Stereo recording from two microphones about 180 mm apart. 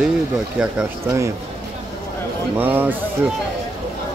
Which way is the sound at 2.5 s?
10° right (ahead or behind).